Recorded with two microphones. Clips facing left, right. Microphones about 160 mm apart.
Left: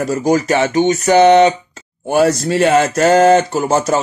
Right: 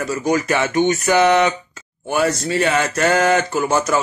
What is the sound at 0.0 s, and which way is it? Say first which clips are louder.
Speech: left 5 dB; 40° left (ahead or behind).